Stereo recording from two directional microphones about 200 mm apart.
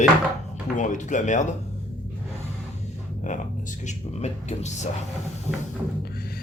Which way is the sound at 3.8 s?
35° left (ahead or behind).